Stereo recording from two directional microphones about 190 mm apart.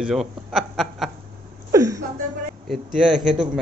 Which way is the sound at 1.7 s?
15° right (ahead or behind).